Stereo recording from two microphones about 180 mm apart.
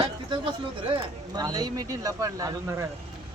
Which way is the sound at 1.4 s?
20° right (ahead or behind).